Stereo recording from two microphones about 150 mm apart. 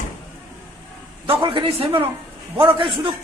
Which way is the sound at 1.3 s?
35° right (ahead or behind).